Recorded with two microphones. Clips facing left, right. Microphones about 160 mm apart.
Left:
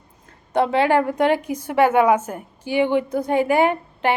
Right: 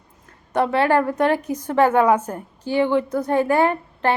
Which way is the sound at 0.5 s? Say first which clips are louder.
Left 1 dB; 20° left (ahead or behind).